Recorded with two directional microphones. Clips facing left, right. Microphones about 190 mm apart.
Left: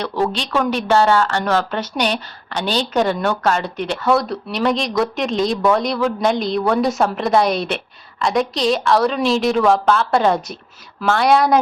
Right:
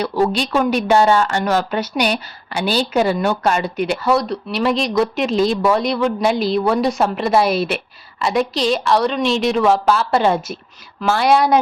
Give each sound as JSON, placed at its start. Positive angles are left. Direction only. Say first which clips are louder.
{"t": 0.0, "sound": "speech", "louder": "right 3 dB", "side_deg": -10}